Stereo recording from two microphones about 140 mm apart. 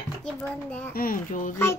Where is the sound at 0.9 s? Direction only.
90° left; by 1.6 s 75° left (ahead or behind).